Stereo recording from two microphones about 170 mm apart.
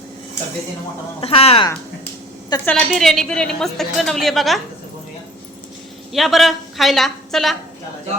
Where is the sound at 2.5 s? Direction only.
25° left (ahead or behind).